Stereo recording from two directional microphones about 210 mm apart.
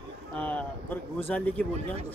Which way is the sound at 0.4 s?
5° left (ahead or behind).